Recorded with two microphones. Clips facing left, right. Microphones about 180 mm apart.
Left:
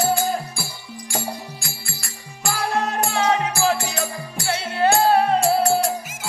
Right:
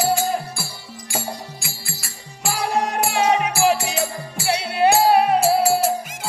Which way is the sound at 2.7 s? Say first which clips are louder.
Right 2 dB; 15° right (ahead or behind).